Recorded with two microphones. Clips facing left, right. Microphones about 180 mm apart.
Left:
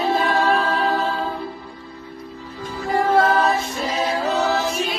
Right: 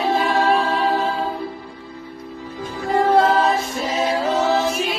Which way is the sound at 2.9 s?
25° right (ahead or behind).